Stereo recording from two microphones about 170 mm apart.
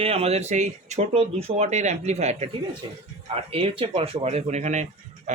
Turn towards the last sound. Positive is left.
turn(degrees=-45)  # may be behind; listen again after turning